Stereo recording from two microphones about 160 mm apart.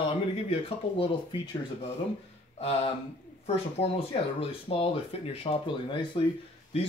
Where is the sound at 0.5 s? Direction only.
35° left (ahead or behind).